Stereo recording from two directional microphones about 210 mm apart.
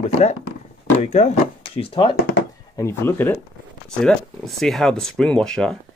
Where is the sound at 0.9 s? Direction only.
30° left (ahead or behind).